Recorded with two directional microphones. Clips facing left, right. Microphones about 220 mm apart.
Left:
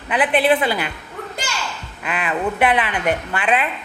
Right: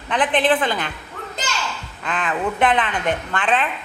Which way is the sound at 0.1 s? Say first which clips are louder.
Left 2 dB; 10° left (ahead or behind).